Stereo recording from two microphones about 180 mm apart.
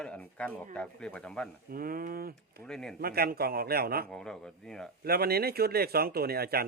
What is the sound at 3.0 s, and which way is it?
Speech, 60° right (ahead or behind).